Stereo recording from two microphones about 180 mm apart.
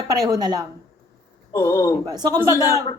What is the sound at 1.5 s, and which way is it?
Speech, 15° left (ahead or behind).